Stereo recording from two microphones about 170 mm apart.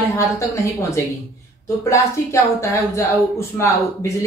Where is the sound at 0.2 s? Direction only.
15° left (ahead or behind).